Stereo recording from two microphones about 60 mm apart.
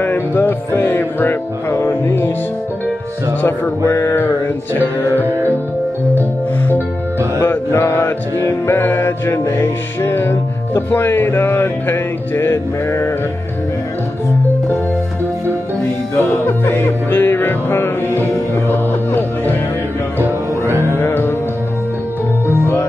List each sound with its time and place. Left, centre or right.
0.0 s music: left
3.8 s a sound: left
7.3 s music: left
16.2 s music: left
20.2 s music: right
21.0 s music: left